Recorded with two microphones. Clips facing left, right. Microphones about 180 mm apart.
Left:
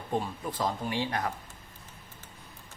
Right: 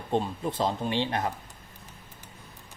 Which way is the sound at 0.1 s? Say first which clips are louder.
Right 4 dB; 25° right (ahead or behind).